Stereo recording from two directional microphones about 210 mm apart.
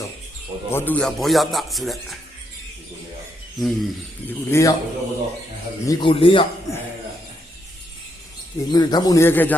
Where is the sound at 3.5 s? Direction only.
Centre (ahead or behind).